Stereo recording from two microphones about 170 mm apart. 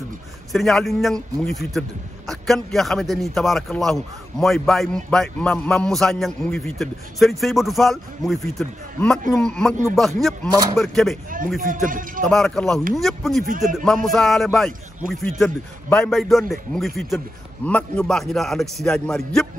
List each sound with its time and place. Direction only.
0.5 s a man's voice: centre (ahead or behind)
11.6 s speech: 55° right (ahead or behind)
12.3 s a man's voice: centre (ahead or behind)